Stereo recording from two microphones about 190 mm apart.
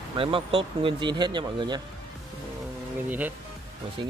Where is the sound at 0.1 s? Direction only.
30° right (ahead or behind).